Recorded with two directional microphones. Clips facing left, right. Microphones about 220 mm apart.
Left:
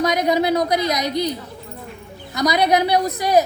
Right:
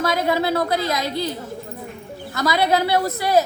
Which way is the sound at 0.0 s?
15° left (ahead or behind).